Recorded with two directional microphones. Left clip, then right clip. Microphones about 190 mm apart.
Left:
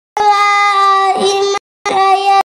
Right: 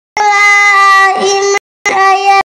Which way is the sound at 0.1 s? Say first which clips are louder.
Right 3 dB; 30° left (ahead or behind).